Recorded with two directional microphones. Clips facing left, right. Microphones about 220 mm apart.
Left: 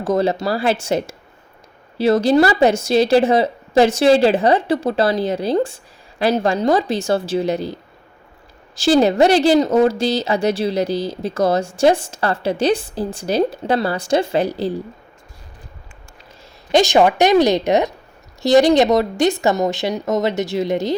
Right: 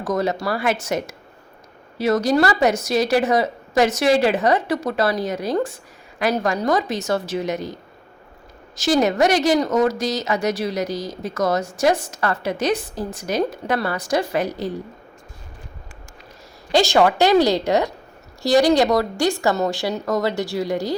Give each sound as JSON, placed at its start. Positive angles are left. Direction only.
{"t": 0.0, "sound": "speech", "side_deg": 30}
{"t": 16.7, "sound": "speech", "side_deg": 20}